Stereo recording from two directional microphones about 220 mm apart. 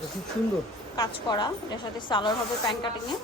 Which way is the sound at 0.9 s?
20° left (ahead or behind).